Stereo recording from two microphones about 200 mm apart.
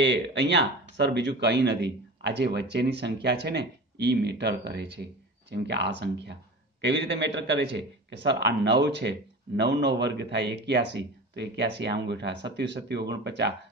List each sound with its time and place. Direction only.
0.0 s speech: 60° right (ahead or behind)